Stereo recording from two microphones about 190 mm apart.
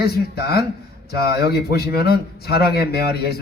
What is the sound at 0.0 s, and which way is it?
Speech, 55° left (ahead or behind).